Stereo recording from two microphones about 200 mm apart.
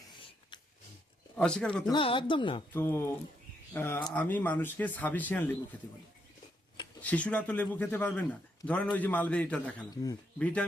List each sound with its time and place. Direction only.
1.4 s speech: 5° left (ahead or behind)
1.9 s speech: 25° left (ahead or behind)
2.7 s a man's voice: 10° left (ahead or behind)
7.0 s a man's voice: 5° left (ahead or behind)
9.9 s speech: 20° left (ahead or behind)
10.3 s speech: 5° left (ahead or behind)